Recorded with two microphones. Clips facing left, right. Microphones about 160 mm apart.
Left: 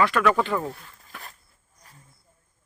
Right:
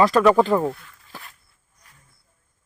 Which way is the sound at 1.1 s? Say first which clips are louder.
Right 1 dB; 35° right (ahead or behind).